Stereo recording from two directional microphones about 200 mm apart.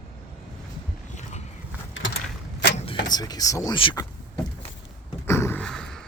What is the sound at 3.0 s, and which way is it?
Speech, 20° left (ahead or behind).